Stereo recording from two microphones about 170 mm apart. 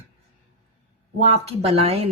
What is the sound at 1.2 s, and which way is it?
Speech, 35° right (ahead or behind).